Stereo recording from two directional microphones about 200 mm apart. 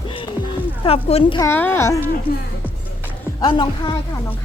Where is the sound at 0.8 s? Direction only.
30° left (ahead or behind).